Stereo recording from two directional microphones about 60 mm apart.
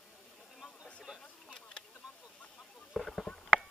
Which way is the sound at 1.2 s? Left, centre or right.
Centre.